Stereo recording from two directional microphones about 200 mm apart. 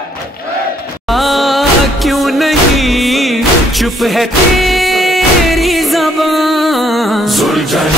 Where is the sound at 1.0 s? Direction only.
Centre (ahead or behind).